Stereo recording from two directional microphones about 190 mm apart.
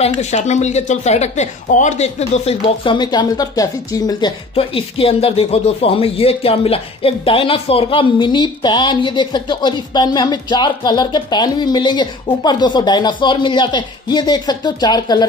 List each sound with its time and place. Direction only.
0.0 s speech: 35° left (ahead or behind); by 15.2 s 20° left (ahead or behind)